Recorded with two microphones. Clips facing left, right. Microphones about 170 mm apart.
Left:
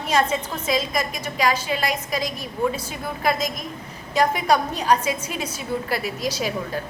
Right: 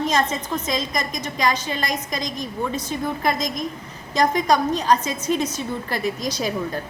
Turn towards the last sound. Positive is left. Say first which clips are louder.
# right 1 dB
turn(degrees=5)  # may be behind; listen again after turning